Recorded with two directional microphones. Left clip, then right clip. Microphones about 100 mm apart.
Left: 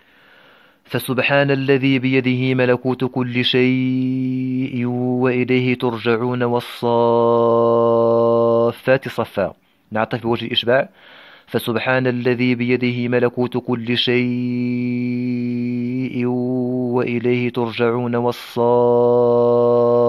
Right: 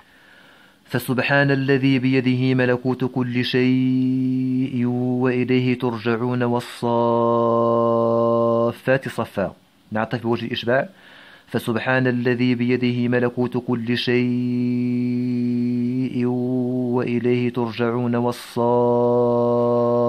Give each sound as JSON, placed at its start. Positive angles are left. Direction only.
{"t": 0.9, "sound": "a man's voice", "side_deg": 35}